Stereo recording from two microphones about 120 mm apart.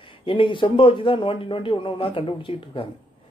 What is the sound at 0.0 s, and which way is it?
Speech, 45° left (ahead or behind).